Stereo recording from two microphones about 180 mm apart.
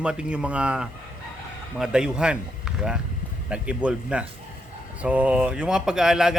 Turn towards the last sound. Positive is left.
turn(degrees=-5)  # may be behind; listen again after turning